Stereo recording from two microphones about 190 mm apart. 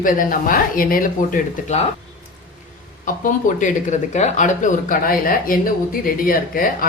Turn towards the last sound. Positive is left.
turn(degrees=50)  # may be behind; listen again after turning